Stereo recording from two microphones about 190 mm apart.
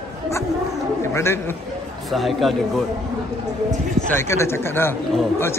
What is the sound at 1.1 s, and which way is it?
Speech, 15° left (ahead or behind).